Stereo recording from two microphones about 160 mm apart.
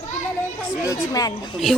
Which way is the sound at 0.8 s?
20° left (ahead or behind).